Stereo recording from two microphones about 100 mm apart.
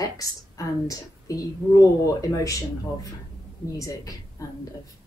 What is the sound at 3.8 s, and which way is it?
Speech, 35° left (ahead or behind).